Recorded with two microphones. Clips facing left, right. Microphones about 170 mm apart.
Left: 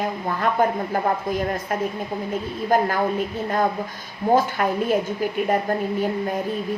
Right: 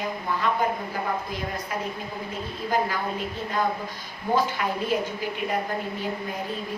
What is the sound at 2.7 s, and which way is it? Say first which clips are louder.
Speech: left 6 dB; 50° left (ahead or behind).